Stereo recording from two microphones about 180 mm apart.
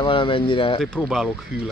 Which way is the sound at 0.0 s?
30° left (ahead or behind).